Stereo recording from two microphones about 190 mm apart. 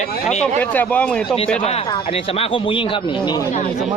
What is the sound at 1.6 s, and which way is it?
Speech, 30° left (ahead or behind).